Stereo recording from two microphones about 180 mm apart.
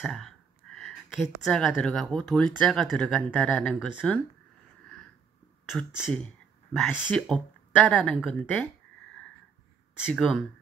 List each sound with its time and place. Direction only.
0.0 s a sound: centre (ahead or behind)
1.4 s speech: centre (ahead or behind)
5.7 s speech: centre (ahead or behind)
9.9 s speech: centre (ahead or behind)